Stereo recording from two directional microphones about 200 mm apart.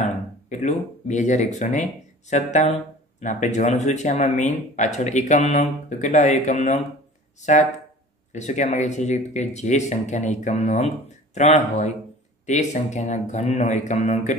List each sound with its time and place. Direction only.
0.0 s speech: 35° left (ahead or behind)
8.3 s speech: 35° left (ahead or behind)